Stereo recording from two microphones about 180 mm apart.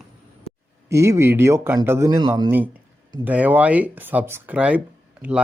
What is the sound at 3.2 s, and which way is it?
Speech, 10° right (ahead or behind).